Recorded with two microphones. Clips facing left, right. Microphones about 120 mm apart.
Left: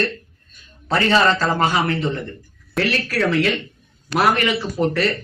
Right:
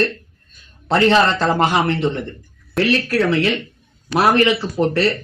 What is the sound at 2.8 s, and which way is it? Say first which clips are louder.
Speech: right 3 dB; centre (ahead or behind).